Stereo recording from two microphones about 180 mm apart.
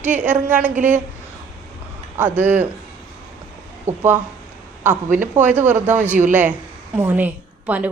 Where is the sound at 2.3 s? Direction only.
10° right (ahead or behind).